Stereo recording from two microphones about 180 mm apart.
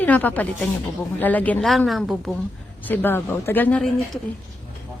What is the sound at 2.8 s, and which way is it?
Speech, 10° left (ahead or behind).